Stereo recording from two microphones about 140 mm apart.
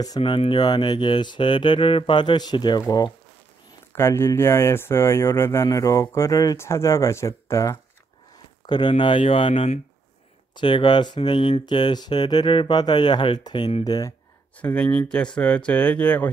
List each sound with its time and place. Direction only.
0.2 s speech: 40° left (ahead or behind); by 7.8 s 20° left (ahead or behind)
8.6 s speech: 35° left (ahead or behind)
13.8 s speech: 25° left (ahead or behind)
14.6 s speech: 10° left (ahead or behind)